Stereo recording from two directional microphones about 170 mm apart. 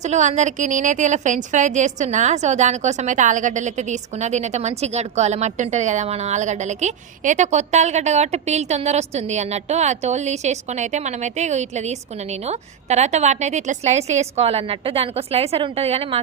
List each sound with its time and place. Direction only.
0.0 s a woman's voice: 45° right (ahead or behind)